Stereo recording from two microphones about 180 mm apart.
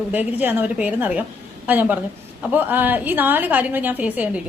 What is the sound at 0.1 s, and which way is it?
A woman's voice, 10° right (ahead or behind).